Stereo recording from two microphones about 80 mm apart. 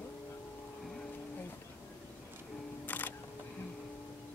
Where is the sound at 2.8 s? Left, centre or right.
Left.